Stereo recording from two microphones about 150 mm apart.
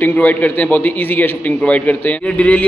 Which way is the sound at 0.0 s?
10° left (ahead or behind).